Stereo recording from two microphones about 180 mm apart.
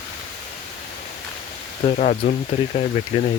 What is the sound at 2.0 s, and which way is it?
Speech, 45° left (ahead or behind).